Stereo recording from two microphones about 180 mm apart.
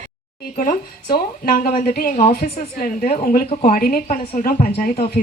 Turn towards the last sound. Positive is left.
turn(degrees=60)  # may be behind; listen again after turning